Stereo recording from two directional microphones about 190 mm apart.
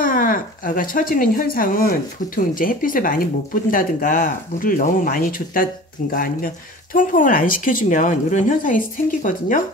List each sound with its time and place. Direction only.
0.0 s speech: 45° left (ahead or behind)